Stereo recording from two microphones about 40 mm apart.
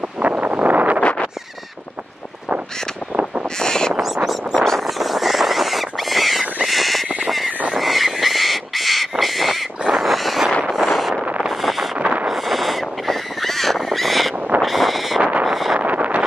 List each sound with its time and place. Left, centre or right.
0.2 s wind noise: right
1.0 s a sound: left
3.5 s crow: centre
4.0 s a sound: centre
6.6 s crow: centre
7.2 s frog: centre
7.7 s crow: centre
9.8 s frog: centre
10.7 s a sound: centre
11.4 s wind noise: centre
12.3 s crow: centre
14.6 s a sound: centre
15.4 s wind noise: centre
15.8 s vehicle: right